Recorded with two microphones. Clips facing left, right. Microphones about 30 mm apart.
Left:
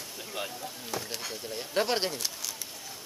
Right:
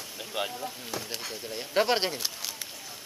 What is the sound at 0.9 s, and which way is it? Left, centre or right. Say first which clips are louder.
Speech: left 3 dB; centre.